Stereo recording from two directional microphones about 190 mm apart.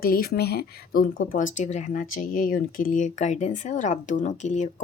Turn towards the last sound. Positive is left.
turn(degrees=40)  # may be behind; listen again after turning